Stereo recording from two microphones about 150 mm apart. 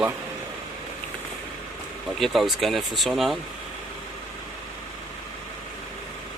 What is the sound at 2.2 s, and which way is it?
Speech, centre (ahead or behind).